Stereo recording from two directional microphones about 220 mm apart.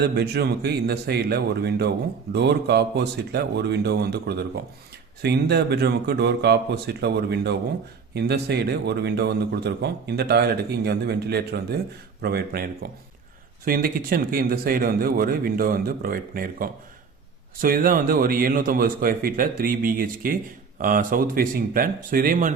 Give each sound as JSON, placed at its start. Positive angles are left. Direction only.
{"t": 0.0, "sound": "a man's voice", "side_deg": -45}